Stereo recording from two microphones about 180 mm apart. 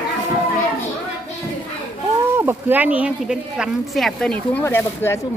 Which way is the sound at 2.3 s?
10° right (ahead or behind).